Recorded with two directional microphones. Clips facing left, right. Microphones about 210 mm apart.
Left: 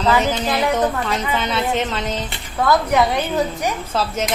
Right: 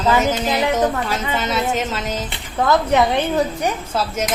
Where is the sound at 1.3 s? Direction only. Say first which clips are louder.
Right 1 dB; 5° right (ahead or behind).